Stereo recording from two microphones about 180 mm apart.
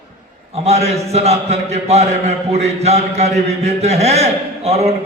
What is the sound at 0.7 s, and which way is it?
A man's voice, 35° right (ahead or behind).